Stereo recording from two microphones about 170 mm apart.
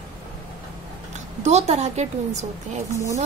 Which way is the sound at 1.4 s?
40° right (ahead or behind).